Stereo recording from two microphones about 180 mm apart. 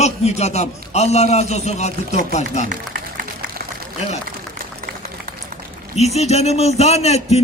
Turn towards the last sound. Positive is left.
turn(degrees=35)  # may be behind; listen again after turning